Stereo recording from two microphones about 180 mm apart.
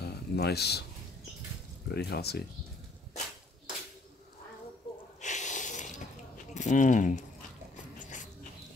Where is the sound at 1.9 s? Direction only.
65° left (ahead or behind).